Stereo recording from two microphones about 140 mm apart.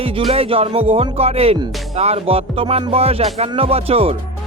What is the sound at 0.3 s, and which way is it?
Music, 45° right (ahead or behind).